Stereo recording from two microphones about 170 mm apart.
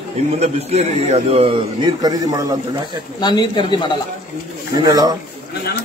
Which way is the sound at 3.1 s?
25° left (ahead or behind).